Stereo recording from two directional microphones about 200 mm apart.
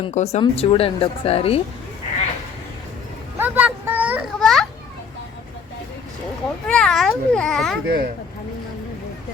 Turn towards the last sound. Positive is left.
turn(degrees=0)  # may be behind; listen again after turning